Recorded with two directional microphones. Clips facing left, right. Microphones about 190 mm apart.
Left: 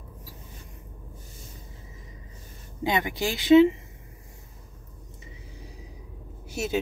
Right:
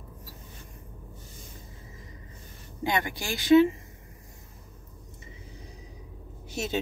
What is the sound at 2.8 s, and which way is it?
Speech, 20° left (ahead or behind).